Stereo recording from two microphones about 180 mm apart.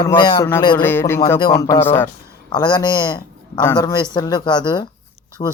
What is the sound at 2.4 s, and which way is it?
A man's voice, 25° left (ahead or behind).